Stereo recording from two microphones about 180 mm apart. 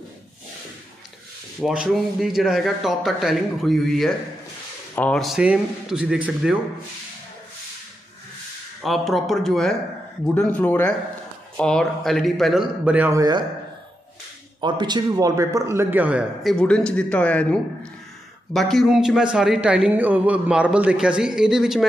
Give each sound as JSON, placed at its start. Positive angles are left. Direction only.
{"t": 1.6, "sound": "a man's voice", "side_deg": -5}
{"t": 8.8, "sound": "a man's voice", "side_deg": 0}
{"t": 14.6, "sound": "a man's voice", "side_deg": -25}
{"t": 16.5, "sound": "a man's voice", "side_deg": 5}